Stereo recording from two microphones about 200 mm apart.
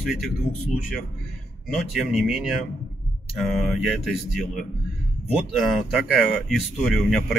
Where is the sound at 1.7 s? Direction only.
Centre (ahead or behind).